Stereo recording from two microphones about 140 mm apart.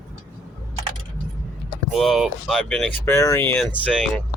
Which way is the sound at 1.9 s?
Centre (ahead or behind).